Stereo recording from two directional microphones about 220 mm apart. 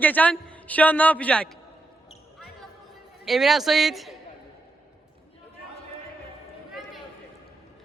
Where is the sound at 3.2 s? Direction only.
Centre (ahead or behind).